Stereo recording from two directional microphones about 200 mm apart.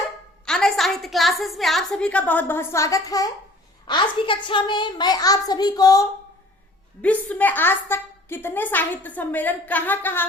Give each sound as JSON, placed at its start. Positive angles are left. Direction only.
{"t": 0.4, "sound": "a woman's voice", "side_deg": 0}
{"t": 7.0, "sound": "a woman's voice", "side_deg": 5}